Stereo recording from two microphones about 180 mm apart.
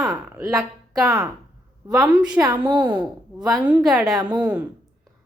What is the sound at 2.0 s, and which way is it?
Speech, 5° right (ahead or behind).